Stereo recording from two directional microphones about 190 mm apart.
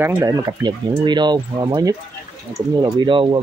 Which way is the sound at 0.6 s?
25° right (ahead or behind).